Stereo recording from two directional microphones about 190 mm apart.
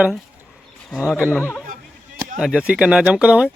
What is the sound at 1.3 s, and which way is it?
Speech, 10° left (ahead or behind).